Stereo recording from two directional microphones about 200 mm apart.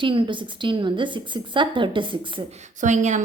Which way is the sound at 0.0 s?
25° right (ahead or behind).